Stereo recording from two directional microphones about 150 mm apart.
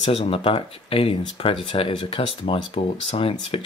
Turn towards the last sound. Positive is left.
turn(degrees=40)  # may be behind; listen again after turning